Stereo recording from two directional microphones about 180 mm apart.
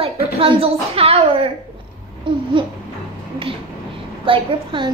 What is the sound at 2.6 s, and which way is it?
Speech, 25° right (ahead or behind).